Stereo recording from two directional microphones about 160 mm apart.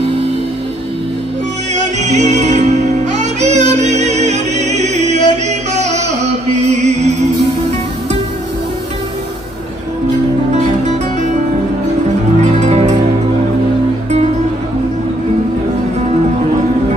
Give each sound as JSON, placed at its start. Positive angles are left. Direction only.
{"t": 1.7, "sound": "music", "side_deg": -45}
{"t": 12.4, "sound": "music", "side_deg": -45}